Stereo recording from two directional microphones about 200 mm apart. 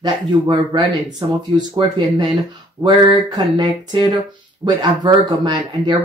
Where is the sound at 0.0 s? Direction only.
20° right (ahead or behind).